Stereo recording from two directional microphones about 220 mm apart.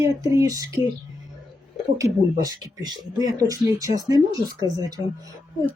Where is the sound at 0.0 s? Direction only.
15° right (ahead or behind).